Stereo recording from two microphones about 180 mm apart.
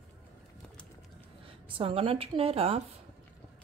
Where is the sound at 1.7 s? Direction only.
30° right (ahead or behind).